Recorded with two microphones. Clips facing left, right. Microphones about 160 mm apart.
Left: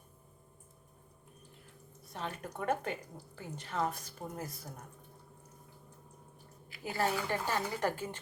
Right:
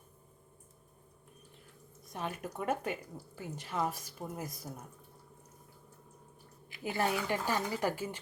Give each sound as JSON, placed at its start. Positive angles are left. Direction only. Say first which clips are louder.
{"t": 2.1, "sound": "speech", "louder": "right 2 dB", "side_deg": -10}
{"t": 6.7, "sound": "speech", "louder": "right 1 dB", "side_deg": -20}